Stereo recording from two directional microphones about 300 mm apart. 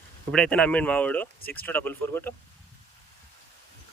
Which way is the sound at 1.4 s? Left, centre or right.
Left.